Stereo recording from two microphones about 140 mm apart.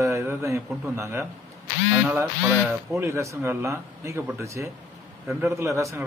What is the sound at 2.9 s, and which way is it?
Speech, 20° right (ahead or behind).